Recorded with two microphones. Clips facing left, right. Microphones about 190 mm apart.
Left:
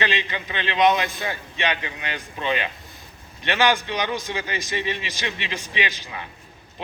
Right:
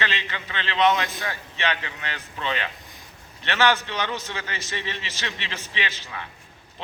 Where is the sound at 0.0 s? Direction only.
15° left (ahead or behind).